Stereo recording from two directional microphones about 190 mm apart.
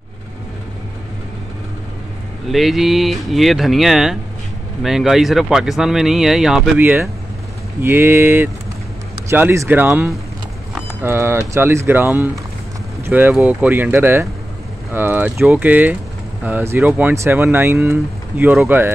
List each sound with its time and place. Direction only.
2.5 s speech: centre (ahead or behind)